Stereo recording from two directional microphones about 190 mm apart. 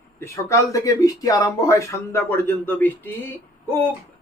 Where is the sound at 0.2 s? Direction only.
15° left (ahead or behind).